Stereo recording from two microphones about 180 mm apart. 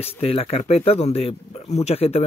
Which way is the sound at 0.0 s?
35° left (ahead or behind).